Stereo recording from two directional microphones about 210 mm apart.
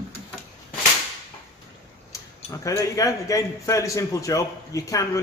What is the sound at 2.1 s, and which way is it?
A man's voice, 15° left (ahead or behind).